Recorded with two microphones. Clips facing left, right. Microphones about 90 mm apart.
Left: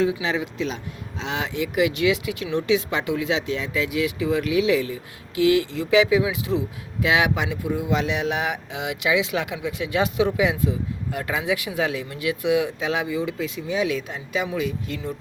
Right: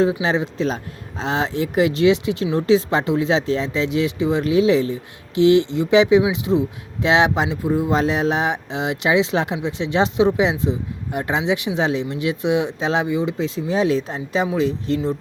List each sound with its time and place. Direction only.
0.0 s speech: 35° right (ahead or behind)